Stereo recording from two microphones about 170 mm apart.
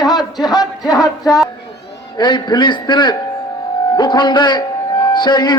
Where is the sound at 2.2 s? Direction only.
25° left (ahead or behind).